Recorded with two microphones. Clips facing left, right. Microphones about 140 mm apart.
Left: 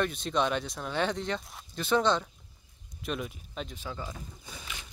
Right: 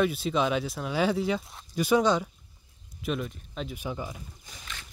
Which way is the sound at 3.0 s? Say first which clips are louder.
Right 4 dB; centre (ahead or behind).